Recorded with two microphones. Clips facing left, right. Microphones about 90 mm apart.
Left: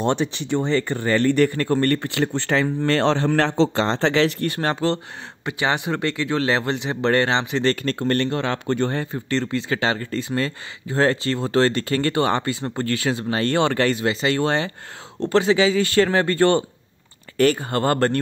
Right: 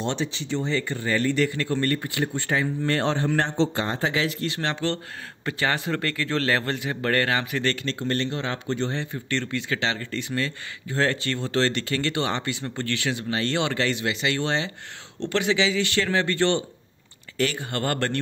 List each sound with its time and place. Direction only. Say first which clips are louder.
0.0 s speech: left 6 dB; 55° left (ahead or behind); by 5.0 s 35° left (ahead or behind)
5.4 s speech: left 3 dB; 15° left (ahead or behind)
7.7 s speech: left 5 dB; 50° left (ahead or behind)
9.0 s speech: left 5 dB; 35° left (ahead or behind)
15.2 s speech: left 6 dB; 35° left (ahead or behind)